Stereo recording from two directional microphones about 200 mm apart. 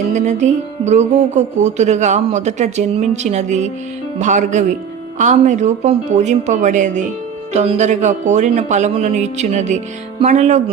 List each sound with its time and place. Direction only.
0.1 s music: 35° right (ahead or behind)